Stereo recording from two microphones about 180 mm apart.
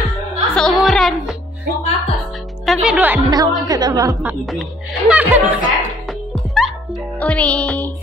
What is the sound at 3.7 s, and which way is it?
Speech, 20° right (ahead or behind).